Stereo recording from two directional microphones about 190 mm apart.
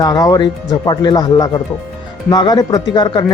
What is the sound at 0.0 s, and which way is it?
Speech, 20° left (ahead or behind).